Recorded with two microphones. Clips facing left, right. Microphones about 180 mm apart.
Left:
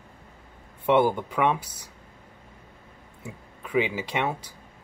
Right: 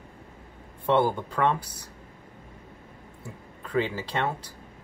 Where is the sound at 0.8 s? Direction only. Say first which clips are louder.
Left 2 dB; 15° left (ahead or behind).